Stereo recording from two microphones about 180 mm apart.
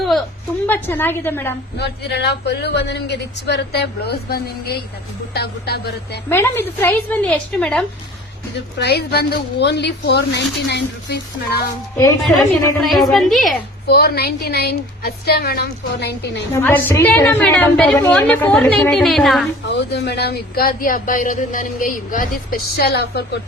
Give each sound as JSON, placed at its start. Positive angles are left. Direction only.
{"t": 0.7, "sound": "a woman's voice", "side_deg": 10}
{"t": 1.8, "sound": "a woman's voice", "side_deg": 70}
{"t": 6.2, "sound": "a woman's voice", "side_deg": 10}
{"t": 8.8, "sound": "speech", "side_deg": 65}
{"t": 12.8, "sound": "a woman's voice", "side_deg": 0}
{"t": 13.8, "sound": "a woman's voice", "side_deg": 60}
{"t": 16.5, "sound": "a woman's voice", "side_deg": 15}
{"t": 19.6, "sound": "speech", "side_deg": 70}